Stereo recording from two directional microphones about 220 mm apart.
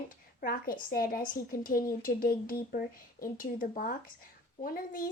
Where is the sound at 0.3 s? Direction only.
40° left (ahead or behind).